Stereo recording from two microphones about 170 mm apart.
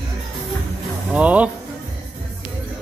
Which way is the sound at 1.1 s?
10° right (ahead or behind).